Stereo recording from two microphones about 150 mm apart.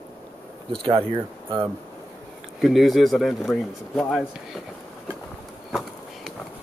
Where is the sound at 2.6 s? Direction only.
Centre (ahead or behind).